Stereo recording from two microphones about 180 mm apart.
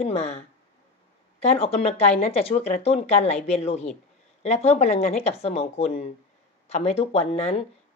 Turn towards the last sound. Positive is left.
turn(degrees=35)  # may be behind; listen again after turning